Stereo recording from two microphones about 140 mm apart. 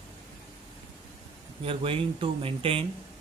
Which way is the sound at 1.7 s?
40° right (ahead or behind).